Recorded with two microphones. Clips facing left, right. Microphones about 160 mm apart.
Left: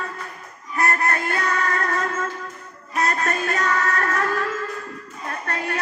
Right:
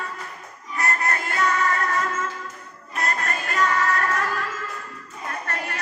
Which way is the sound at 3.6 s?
45° left (ahead or behind).